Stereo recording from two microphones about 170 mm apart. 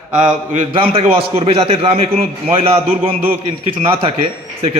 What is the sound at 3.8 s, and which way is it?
Speech, 30° right (ahead or behind).